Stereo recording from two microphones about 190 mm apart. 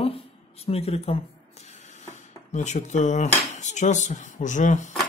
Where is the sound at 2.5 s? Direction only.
40° left (ahead or behind).